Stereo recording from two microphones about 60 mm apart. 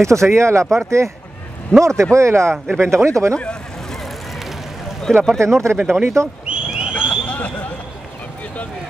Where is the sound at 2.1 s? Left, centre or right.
Right.